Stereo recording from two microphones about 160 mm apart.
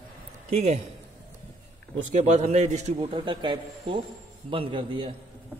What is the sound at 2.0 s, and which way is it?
A man's voice, 45° right (ahead or behind).